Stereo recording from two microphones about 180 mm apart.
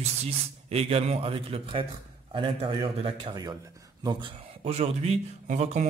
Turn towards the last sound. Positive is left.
turn(degrees=-40)  # may be behind; listen again after turning